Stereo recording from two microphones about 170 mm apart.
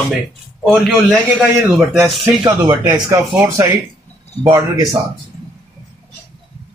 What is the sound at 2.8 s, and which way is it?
Speech, 15° right (ahead or behind).